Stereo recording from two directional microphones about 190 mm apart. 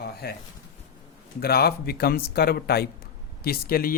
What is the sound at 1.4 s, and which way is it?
Speech, 55° left (ahead or behind).